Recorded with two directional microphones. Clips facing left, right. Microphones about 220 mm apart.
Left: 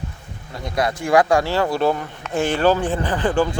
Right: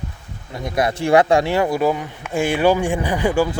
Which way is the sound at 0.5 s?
20° right (ahead or behind).